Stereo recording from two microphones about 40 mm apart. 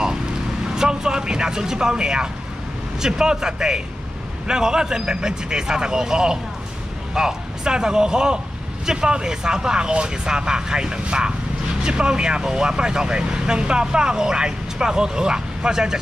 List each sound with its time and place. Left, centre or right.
0.7 s vehicle: centre
3.0 s speech: centre